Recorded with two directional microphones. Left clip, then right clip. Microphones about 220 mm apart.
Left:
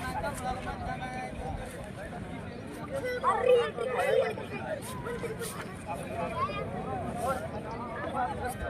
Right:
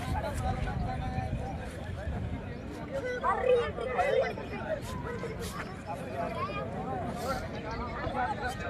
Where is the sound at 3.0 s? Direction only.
30° left (ahead or behind).